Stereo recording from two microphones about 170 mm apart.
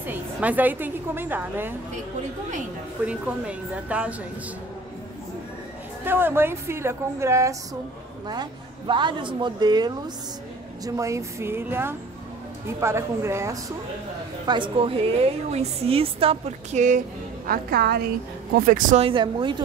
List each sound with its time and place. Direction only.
0.0 s a woman's voice: 10° right (ahead or behind)
3.0 s a woman's voice: 5° right (ahead or behind)
6.0 s a woman's voice: 10° right (ahead or behind)
14.4 s a woman's voice: 30° right (ahead or behind); by 17.0 s 45° right (ahead or behind)
17.5 s a woman's voice: 65° right (ahead or behind)
18.7 s speech: 50° right (ahead or behind)
18.9 s speech: 30° right (ahead or behind)